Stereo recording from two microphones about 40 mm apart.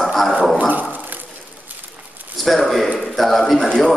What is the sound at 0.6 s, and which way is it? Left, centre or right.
Dog, right.